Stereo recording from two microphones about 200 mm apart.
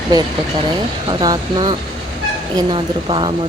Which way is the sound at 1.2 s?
20° right (ahead or behind).